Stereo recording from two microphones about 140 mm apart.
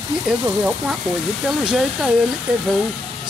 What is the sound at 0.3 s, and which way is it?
Speech, 5° right (ahead or behind).